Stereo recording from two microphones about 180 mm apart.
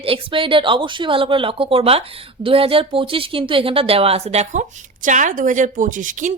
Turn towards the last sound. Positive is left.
turn(degrees=-45)  # may be behind; listen again after turning